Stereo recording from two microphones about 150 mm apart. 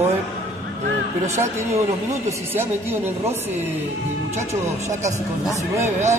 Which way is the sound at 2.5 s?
15° right (ahead or behind).